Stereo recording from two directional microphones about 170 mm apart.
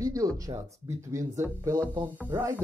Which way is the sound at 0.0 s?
20° right (ahead or behind).